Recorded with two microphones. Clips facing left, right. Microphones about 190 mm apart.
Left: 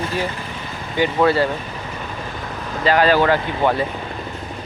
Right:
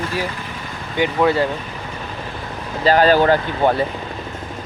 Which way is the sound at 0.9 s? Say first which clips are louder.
Even; 15° right (ahead or behind).